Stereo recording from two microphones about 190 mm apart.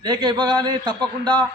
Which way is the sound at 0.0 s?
20° right (ahead or behind).